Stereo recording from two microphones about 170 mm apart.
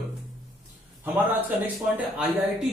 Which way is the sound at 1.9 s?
5° right (ahead or behind).